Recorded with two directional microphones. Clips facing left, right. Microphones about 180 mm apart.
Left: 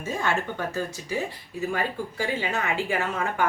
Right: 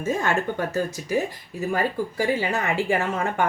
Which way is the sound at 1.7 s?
40° right (ahead or behind).